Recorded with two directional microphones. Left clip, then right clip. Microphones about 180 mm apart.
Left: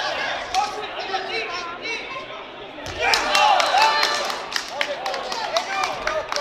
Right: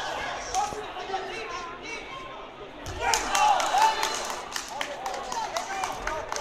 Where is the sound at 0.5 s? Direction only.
30° left (ahead or behind).